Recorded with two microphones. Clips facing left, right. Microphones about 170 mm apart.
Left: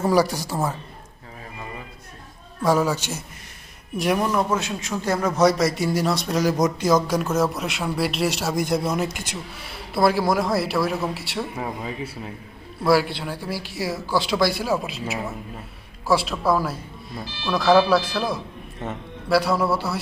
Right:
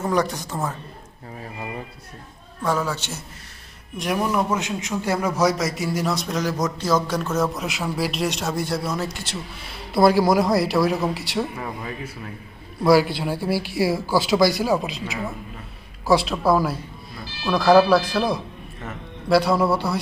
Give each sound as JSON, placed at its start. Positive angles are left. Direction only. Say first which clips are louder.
{"t": 0.0, "sound": "speech", "louder": "left 3 dB", "side_deg": 10}
{"t": 2.6, "sound": "speech", "louder": "left 4 dB", "side_deg": 10}
{"t": 4.0, "sound": "a man's voice", "louder": "left 2 dB", "side_deg": 0}
{"t": 4.3, "sound": "a man's voice", "louder": "even", "side_deg": -15}
{"t": 6.5, "sound": "speech", "louder": "left 2 dB", "side_deg": 15}
{"t": 8.5, "sound": "speech", "louder": "left 3 dB", "side_deg": 20}
{"t": 10.0, "sound": "a man's voice", "louder": "right 3 dB", "side_deg": 0}
{"t": 11.5, "sound": "speech", "louder": "left 2 dB", "side_deg": 15}
{"t": 12.8, "sound": "a man's voice", "louder": "right 3 dB", "side_deg": 0}
{"t": 16.1, "sound": "a man's voice", "louder": "right 2 dB", "side_deg": 5}